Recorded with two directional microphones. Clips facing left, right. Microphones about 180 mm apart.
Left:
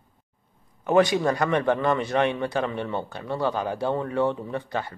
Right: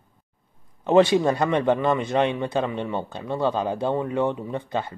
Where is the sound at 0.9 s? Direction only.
25° right (ahead or behind).